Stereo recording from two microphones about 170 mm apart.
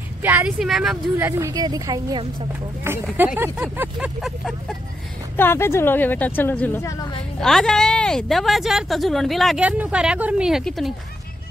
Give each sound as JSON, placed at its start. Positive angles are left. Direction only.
{"t": 0.2, "sound": "speech", "side_deg": -10}
{"t": 1.1, "sound": "a woman's voice", "side_deg": -15}
{"t": 3.2, "sound": "speech", "side_deg": -10}
{"t": 4.2, "sound": "speech", "side_deg": 0}
{"t": 5.3, "sound": "a woman's voice", "side_deg": 15}
{"t": 7.3, "sound": "speech", "side_deg": 5}